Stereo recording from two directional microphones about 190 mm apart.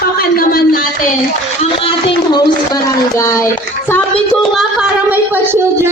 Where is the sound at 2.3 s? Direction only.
20° left (ahead or behind).